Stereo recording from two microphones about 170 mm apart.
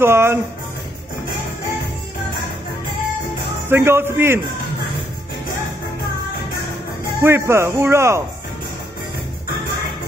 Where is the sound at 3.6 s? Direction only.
15° right (ahead or behind).